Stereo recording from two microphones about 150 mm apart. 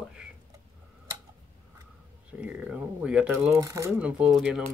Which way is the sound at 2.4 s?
10° right (ahead or behind).